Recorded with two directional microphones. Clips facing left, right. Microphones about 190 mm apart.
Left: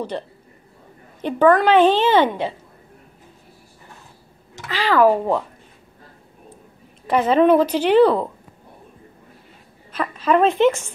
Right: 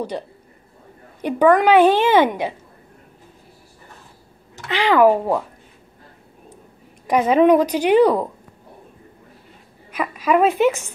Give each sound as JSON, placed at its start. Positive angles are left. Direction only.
{"t": 0.1, "sound": "a woman's voice", "side_deg": -10}
{"t": 4.6, "sound": "a woman's voice", "side_deg": -20}
{"t": 7.1, "sound": "a woman's voice", "side_deg": -10}
{"t": 9.9, "sound": "a woman's voice", "side_deg": -10}